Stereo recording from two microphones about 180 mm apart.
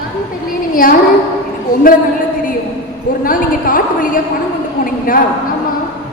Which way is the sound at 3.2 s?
50° left (ahead or behind).